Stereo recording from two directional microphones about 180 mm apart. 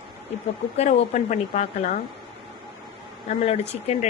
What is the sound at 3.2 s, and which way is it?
Speech, 35° left (ahead or behind).